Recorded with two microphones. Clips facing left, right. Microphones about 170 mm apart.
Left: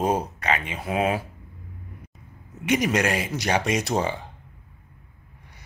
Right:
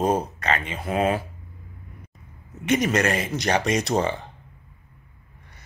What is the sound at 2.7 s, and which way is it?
Speech, 10° left (ahead or behind).